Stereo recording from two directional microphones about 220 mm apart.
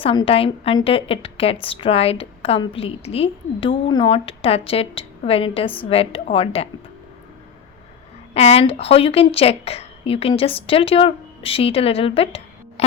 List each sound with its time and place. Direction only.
0.0 s speech: 25° left (ahead or behind)
8.3 s speech: 30° left (ahead or behind)